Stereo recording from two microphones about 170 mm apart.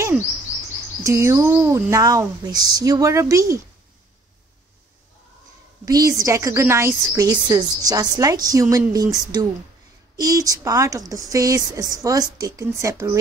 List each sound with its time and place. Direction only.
1.0 s a woman's voice: 15° right (ahead or behind)
5.9 s a woman's voice: 20° right (ahead or behind)